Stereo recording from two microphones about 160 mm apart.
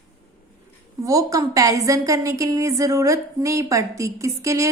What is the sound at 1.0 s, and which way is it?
A woman's voice, 20° right (ahead or behind).